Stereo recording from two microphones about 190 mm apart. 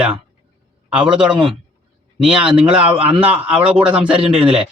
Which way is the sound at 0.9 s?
5° right (ahead or behind).